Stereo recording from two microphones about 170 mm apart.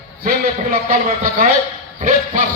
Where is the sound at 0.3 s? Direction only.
60° right (ahead or behind).